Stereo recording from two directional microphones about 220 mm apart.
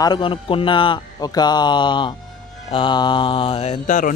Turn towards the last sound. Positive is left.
turn(degrees=35)  # may be behind; listen again after turning